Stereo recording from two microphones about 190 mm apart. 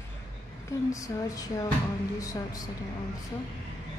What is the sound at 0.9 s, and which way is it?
A woman's voice, 15° left (ahead or behind).